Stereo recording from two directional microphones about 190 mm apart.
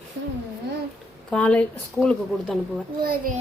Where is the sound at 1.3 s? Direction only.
5° left (ahead or behind).